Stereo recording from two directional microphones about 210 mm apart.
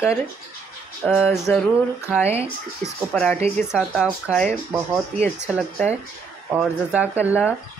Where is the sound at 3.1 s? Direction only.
5° left (ahead or behind).